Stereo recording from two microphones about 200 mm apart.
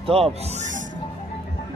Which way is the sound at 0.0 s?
30° right (ahead or behind).